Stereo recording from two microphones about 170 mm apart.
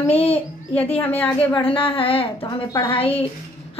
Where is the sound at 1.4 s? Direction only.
30° left (ahead or behind).